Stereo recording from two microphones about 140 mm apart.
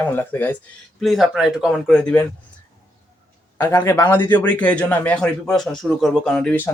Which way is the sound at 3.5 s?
20° left (ahead or behind).